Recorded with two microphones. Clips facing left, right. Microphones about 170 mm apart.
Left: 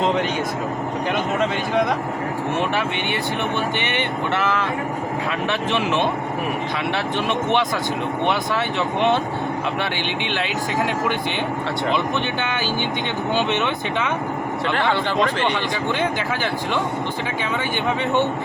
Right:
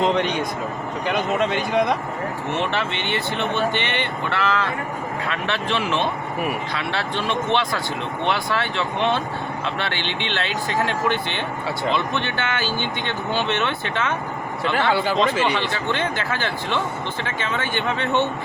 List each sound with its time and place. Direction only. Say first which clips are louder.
1.0 s speech: right 1 dB; centre (ahead or behind)
2.6 s speech: even; 15° left (ahead or behind)
14.6 s speech: right 2 dB; 5° right (ahead or behind)
15.5 s speech: left 1 dB; 15° left (ahead or behind)